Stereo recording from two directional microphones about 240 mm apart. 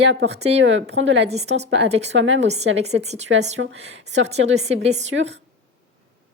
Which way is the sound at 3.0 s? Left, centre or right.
Right.